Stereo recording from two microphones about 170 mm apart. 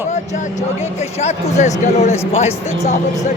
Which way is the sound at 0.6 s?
40° left (ahead or behind).